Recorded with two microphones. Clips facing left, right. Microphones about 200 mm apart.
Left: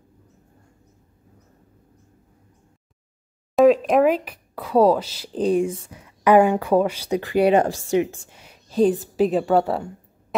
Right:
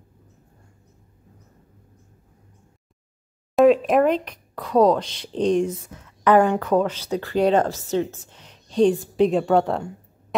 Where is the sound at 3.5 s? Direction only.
Centre (ahead or behind).